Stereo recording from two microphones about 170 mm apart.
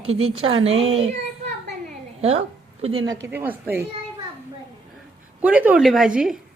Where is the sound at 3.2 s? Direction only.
10° right (ahead or behind).